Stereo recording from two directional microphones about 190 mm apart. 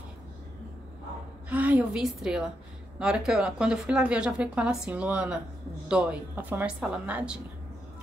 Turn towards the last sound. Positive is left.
turn(degrees=-5)  # may be behind; listen again after turning